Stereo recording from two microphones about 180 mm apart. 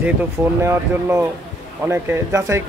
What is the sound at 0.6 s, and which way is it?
Speech, 15° right (ahead or behind).